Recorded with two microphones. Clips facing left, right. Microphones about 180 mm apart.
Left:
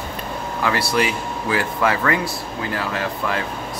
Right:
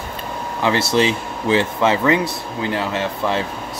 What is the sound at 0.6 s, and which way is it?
Speech, 25° right (ahead or behind).